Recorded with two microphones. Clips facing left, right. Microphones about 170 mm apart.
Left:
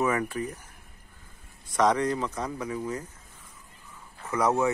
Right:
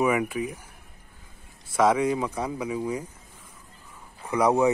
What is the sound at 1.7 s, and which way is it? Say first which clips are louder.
Speech: right 2 dB; 5° right (ahead or behind).